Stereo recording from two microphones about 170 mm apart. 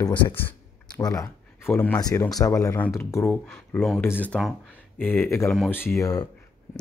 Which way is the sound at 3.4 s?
Centre (ahead or behind).